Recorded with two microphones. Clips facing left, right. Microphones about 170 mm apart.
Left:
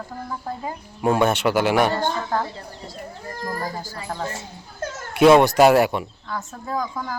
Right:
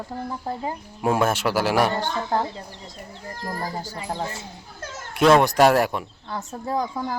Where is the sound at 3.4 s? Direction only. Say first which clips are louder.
Left 1 dB; 20° right (ahead or behind).